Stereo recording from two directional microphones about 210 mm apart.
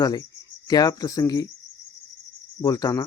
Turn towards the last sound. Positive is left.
turn(degrees=15)  # may be behind; listen again after turning